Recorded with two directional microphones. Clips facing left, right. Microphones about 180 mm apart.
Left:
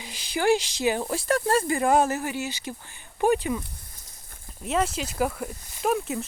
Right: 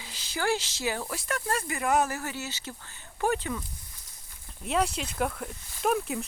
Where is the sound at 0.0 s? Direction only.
15° left (ahead or behind).